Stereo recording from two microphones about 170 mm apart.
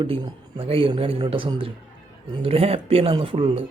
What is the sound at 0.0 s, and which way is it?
A man's voice, 30° right (ahead or behind).